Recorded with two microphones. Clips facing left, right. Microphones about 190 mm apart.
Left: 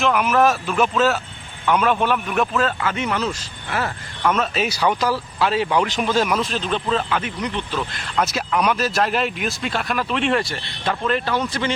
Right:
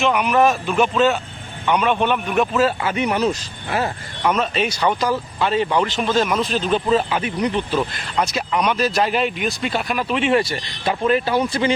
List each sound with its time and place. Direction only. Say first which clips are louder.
0.0 s speech: right 1 dB; centre (ahead or behind); by 4.3 s 20° right (ahead or behind)
4.3 s speech: right 1 dB; centre (ahead or behind)
8.2 s speech: even; centre (ahead or behind)